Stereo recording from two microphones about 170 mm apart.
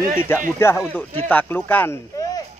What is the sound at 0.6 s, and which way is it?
Speech, 15° left (ahead or behind).